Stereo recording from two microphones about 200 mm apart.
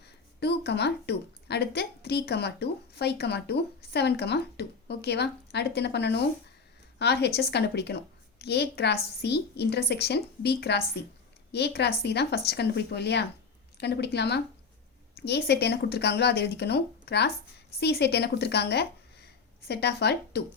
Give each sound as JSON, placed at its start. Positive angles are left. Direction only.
{"t": 0.0, "sound": "a woman's voice", "side_deg": 55}